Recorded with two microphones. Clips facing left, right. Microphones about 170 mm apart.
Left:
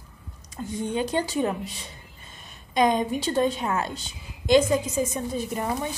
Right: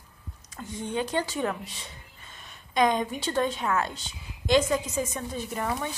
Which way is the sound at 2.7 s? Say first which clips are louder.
Left 2 dB; 30° left (ahead or behind).